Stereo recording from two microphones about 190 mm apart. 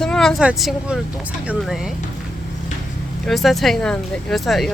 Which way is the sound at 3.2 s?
Centre (ahead or behind).